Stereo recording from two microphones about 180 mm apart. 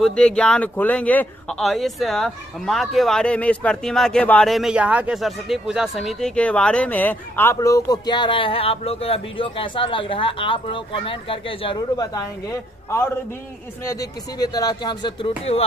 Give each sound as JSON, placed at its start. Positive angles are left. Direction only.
{"t": 0.0, "sound": "speech", "side_deg": 5}
{"t": 13.8, "sound": "speech", "side_deg": 20}